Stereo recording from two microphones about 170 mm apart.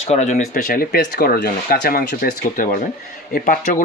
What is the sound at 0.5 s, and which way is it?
Speech, 60° left (ahead or behind).